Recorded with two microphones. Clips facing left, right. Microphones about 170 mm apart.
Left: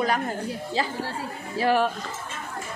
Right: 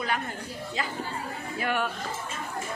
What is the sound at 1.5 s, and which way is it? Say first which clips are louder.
Speech: left 7 dB; 35° left (ahead or behind).